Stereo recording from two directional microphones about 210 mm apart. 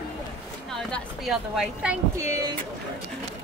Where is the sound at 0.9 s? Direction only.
Centre (ahead or behind).